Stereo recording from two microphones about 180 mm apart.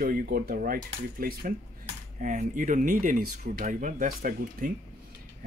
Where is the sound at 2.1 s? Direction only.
40° right (ahead or behind).